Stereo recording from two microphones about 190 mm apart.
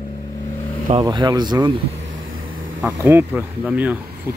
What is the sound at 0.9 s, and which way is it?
Speech, 25° right (ahead or behind).